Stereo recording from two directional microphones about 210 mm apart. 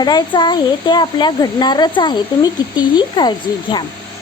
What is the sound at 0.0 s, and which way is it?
Speech, 20° left (ahead or behind).